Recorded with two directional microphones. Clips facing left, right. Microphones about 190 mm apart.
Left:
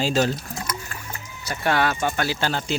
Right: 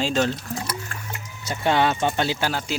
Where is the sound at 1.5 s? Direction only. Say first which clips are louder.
Right 2 dB; 20° right (ahead or behind).